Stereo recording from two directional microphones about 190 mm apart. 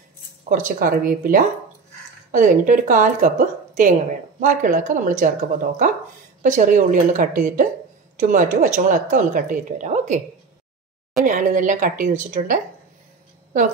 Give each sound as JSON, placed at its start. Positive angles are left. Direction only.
{"t": 0.5, "sound": "a woman's voice", "side_deg": -45}
{"t": 11.2, "sound": "a woman's voice", "side_deg": -40}